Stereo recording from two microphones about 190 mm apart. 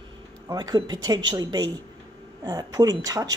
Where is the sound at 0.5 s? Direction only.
20° right (ahead or behind).